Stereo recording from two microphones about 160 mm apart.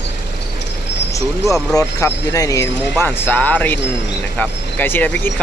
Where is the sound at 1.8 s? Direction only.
20° left (ahead or behind).